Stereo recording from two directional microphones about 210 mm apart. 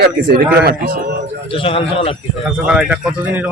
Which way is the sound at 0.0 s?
50° right (ahead or behind).